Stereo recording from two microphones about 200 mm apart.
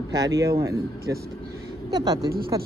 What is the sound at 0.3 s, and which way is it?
Speech, 15° right (ahead or behind).